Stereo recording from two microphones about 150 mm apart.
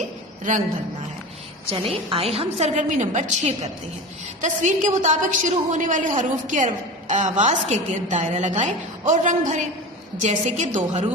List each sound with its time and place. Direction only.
0.5 s a woman's voice: 60° right (ahead or behind)
1.7 s a woman's voice: 40° right (ahead or behind)